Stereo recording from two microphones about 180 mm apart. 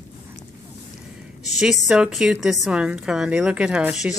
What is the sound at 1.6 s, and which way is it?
A woman's voice, centre (ahead or behind).